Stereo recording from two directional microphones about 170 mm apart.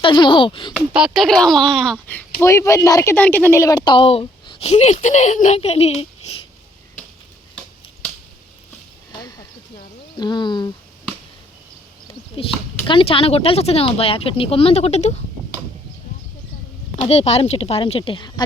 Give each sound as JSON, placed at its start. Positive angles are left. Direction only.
{"t": 0.0, "sound": "speech", "side_deg": 30}
{"t": 0.9, "sound": "speech", "side_deg": 0}
{"t": 2.4, "sound": "speech", "side_deg": 15}
{"t": 10.2, "sound": "speech", "side_deg": 25}
{"t": 12.4, "sound": "speech", "side_deg": 30}
{"t": 17.0, "sound": "speech", "side_deg": 35}